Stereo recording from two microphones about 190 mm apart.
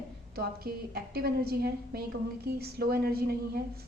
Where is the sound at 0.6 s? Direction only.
55° right (ahead or behind).